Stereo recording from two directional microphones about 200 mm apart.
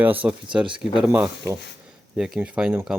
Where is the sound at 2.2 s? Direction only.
5° right (ahead or behind).